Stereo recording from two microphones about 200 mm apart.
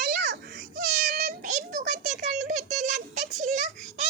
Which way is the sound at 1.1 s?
40° right (ahead or behind).